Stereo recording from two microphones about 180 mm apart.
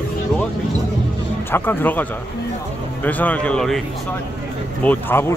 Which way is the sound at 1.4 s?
10° left (ahead or behind).